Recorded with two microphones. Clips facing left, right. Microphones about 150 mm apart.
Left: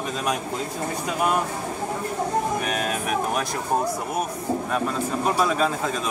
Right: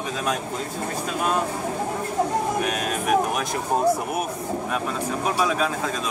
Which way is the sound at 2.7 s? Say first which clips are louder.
Right 3 dB; centre (ahead or behind).